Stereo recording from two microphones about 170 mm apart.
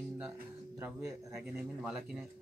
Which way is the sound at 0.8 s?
15° right (ahead or behind).